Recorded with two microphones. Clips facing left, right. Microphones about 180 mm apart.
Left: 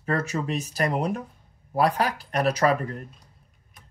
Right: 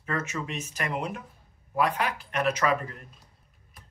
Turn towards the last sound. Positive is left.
turn(degrees=40)  # may be behind; listen again after turning